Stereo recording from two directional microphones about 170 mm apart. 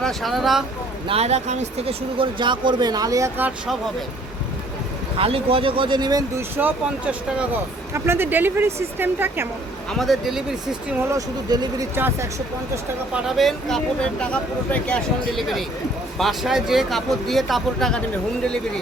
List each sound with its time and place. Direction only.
0.0 s speech: centre (ahead or behind)
1.0 s speech: 35° right (ahead or behind); by 3.5 s 15° right (ahead or behind)
5.1 s speech: 35° right (ahead or behind)
6.6 s speech: 10° right (ahead or behind)
9.9 s speech: centre (ahead or behind)
11.1 s speech: 25° right (ahead or behind)
13.2 s speech: centre (ahead or behind)